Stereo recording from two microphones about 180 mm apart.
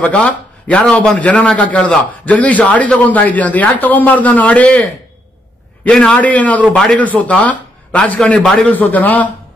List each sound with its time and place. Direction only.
0.0 s a man's voice: 5° left (ahead or behind)
5.9 s a man's voice: 5° left (ahead or behind)